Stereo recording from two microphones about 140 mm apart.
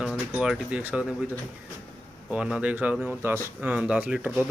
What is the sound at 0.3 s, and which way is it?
Speech, 5° right (ahead or behind).